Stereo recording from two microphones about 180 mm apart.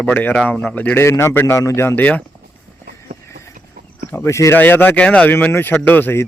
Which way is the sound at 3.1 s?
50° right (ahead or behind).